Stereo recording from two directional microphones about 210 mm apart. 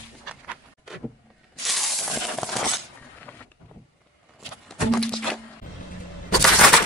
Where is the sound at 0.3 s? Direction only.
5° right (ahead or behind).